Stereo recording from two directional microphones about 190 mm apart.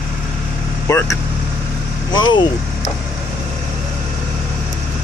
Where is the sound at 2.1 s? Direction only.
25° left (ahead or behind).